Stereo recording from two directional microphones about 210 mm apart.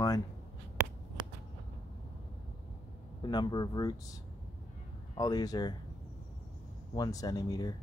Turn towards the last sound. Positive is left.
turn(degrees=20)  # may be behind; listen again after turning